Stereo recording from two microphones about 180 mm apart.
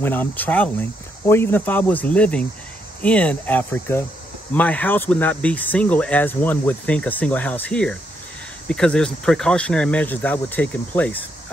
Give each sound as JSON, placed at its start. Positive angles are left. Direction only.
{"t": 0.0, "sound": "speech", "side_deg": 10}